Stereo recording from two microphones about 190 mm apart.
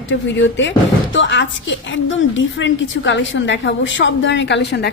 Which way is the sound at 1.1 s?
75° left (ahead or behind).